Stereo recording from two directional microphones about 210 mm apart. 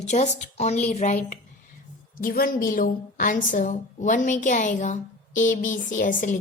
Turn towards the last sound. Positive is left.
turn(degrees=40)  # may be behind; listen again after turning